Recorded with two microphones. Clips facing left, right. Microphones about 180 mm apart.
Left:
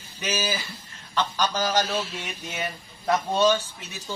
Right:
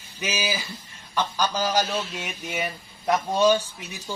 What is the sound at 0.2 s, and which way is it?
A man's voice, 10° right (ahead or behind).